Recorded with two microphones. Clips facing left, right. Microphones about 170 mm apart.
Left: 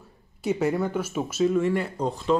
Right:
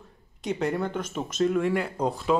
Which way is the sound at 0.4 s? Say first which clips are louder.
Left 3 dB; 5° left (ahead or behind).